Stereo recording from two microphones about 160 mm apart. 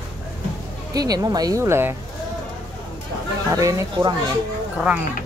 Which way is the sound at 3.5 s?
20° right (ahead or behind).